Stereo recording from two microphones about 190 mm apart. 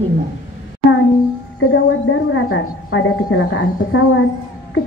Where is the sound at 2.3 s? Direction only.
85° left.